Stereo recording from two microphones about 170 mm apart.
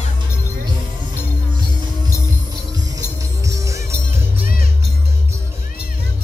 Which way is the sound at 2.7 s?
20° right (ahead or behind).